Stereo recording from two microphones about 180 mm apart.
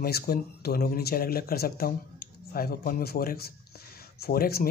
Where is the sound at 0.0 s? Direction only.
60° left (ahead or behind).